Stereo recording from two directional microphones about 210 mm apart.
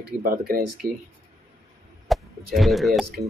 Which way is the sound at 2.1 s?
Centre (ahead or behind).